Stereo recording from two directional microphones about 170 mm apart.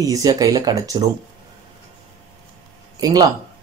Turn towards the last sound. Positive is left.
turn(degrees=-25)  # may be behind; listen again after turning